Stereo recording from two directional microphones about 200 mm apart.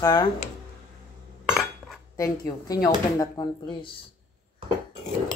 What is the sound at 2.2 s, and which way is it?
A woman's voice, 15° left (ahead or behind).